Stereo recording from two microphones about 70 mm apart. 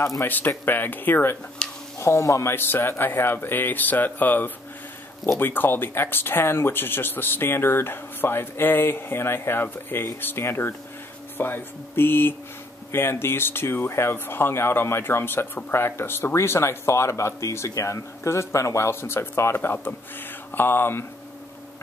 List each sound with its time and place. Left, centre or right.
0.2 s speech: left
1.6 s a sound: centre
2.0 s speech: left
2.5 s speech: left